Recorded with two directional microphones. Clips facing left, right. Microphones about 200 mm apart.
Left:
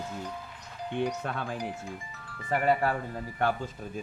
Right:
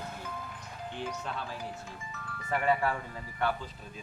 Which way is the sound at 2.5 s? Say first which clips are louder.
Left 3 dB; 40° left (ahead or behind).